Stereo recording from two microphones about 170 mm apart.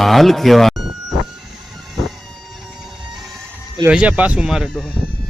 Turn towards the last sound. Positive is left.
turn(degrees=0)  # may be behind; listen again after turning